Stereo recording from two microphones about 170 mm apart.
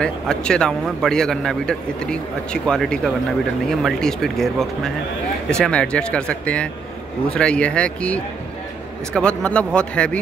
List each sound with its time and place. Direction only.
0.0 s a man's voice: 5° left (ahead or behind)